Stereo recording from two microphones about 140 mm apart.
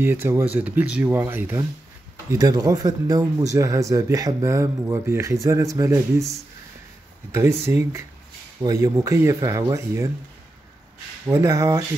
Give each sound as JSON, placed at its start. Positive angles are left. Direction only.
{"t": 0.0, "sound": "speech", "side_deg": -15}
{"t": 2.3, "sound": "speech", "side_deg": -25}
{"t": 11.2, "sound": "speech", "side_deg": -20}